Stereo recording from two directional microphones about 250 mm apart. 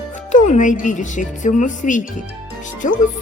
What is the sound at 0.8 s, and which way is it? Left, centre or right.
Speech, left.